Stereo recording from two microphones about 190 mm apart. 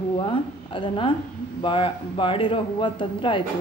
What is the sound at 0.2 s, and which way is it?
A woman's voice, 25° left (ahead or behind).